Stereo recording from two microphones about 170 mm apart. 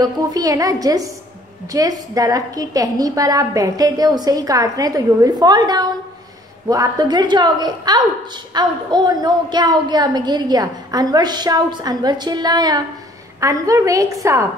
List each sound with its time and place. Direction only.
0.0 s a woman's voice: 20° right (ahead or behind)